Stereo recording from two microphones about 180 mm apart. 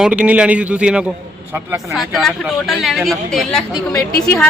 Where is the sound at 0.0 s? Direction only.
5° right (ahead or behind).